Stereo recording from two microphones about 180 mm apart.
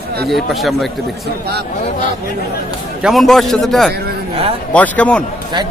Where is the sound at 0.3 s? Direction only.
Centre (ahead or behind).